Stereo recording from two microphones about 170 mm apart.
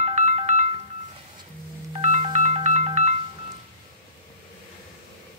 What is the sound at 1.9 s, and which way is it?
Music, 40° right (ahead or behind).